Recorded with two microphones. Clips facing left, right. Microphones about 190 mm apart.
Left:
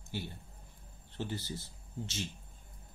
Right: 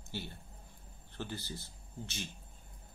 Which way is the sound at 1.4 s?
20° left (ahead or behind).